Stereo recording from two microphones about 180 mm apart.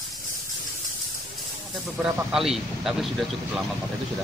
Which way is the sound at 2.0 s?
Centre (ahead or behind).